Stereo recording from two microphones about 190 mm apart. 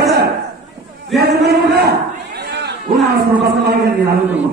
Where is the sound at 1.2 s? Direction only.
55° right (ahead or behind).